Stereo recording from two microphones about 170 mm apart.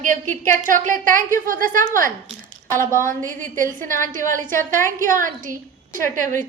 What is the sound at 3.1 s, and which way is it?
A woman's voice, 50° right (ahead or behind).